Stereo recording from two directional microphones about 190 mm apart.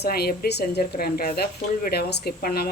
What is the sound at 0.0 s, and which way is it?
Speech, 55° left (ahead or behind).